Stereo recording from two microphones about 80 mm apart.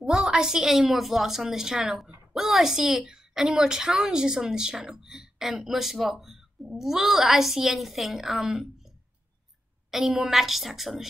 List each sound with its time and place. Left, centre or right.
0.0 s a woman's voice: centre
9.8 s a woman's voice: centre